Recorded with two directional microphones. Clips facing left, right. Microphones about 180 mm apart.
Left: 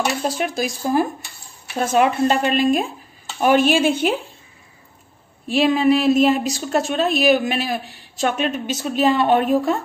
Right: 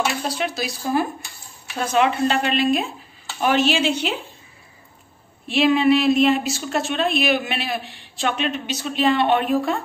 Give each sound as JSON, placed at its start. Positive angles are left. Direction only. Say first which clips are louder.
{"t": 0.3, "sound": "a woman's voice", "louder": "left 3 dB", "side_deg": 45}
{"t": 5.5, "sound": "a sound", "louder": "left 1 dB", "side_deg": 40}
{"t": 6.9, "sound": "a woman's voice", "louder": "left 4 dB", "side_deg": 40}